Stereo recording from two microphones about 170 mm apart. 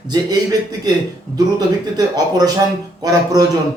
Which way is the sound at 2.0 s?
25° right (ahead or behind).